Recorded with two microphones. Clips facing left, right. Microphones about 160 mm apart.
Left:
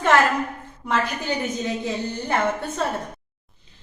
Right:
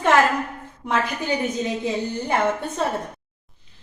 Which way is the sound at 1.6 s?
10° right (ahead or behind).